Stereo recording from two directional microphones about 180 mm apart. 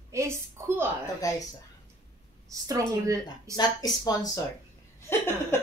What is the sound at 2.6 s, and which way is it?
Speech, 20° right (ahead or behind).